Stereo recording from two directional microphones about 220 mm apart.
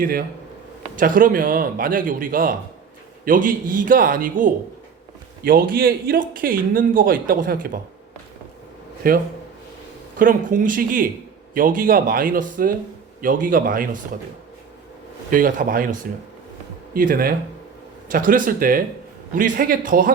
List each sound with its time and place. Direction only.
0.0 s speech: 40° right (ahead or behind)
9.0 s speech: 40° right (ahead or behind)
15.3 s speech: 35° right (ahead or behind)